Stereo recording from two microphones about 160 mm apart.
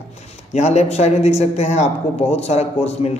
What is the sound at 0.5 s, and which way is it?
A man's voice, 45° left (ahead or behind).